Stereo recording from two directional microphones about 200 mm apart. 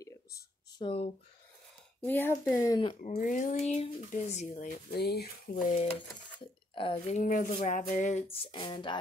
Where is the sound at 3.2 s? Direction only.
40° left (ahead or behind).